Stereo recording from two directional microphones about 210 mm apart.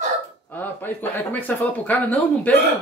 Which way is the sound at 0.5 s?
10° left (ahead or behind).